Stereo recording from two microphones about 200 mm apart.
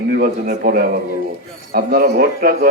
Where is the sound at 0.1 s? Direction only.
45° right (ahead or behind).